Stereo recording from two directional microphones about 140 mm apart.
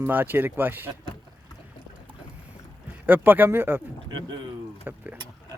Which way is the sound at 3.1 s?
15° right (ahead or behind).